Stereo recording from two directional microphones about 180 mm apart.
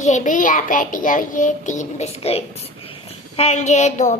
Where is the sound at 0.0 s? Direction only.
45° left (ahead or behind).